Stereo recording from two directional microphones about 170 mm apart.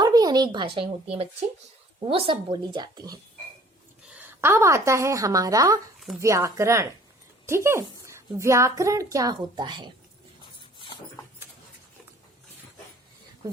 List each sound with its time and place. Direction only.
0.0 s a sound: 25° right (ahead or behind)
2.0 s a woman's voice: 30° right (ahead or behind)
4.1 s a woman's voice: 10° right (ahead or behind)
10.6 s dog: 30° left (ahead or behind)